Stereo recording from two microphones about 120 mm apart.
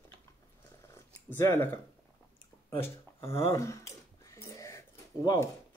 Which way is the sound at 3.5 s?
25° left (ahead or behind).